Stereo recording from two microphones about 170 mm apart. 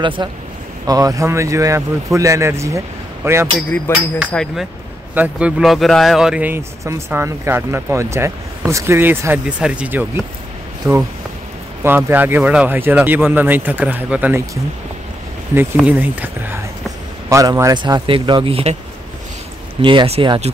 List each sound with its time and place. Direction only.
0.0 s speech: 30° right (ahead or behind)
3.9 s speech: 15° left (ahead or behind)
4.3 s a sound: 5° left (ahead or behind)
5.1 s speech: 10° right (ahead or behind)
15.7 s speech: 10° right (ahead or behind)
17.3 s speech: 20° right (ahead or behind); by 18.8 s 35° right (ahead or behind)
19.8 s speech: 30° right (ahead or behind)